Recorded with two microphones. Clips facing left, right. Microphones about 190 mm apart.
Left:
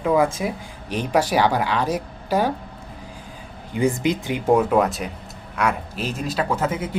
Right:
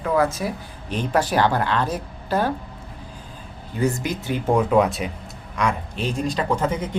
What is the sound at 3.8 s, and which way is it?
Speech, 15° left (ahead or behind).